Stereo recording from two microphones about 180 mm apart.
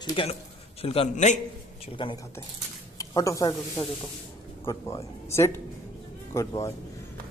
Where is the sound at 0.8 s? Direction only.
35° left (ahead or behind).